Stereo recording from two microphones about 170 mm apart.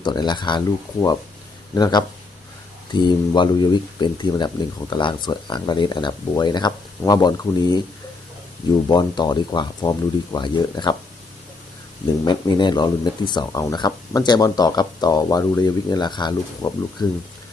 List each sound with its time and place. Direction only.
0.0 s speech: 25° left (ahead or behind)
1.7 s speech: 25° left (ahead or behind)
8.9 s speech: 25° left (ahead or behind)
12.2 s speech: 25° left (ahead or behind)